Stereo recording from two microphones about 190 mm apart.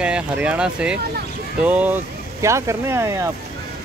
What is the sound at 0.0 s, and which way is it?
Speech, 5° right (ahead or behind).